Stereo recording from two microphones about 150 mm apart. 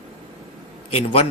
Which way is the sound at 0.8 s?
40° left (ahead or behind).